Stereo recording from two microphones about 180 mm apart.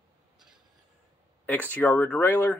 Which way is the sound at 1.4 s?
10° left (ahead or behind).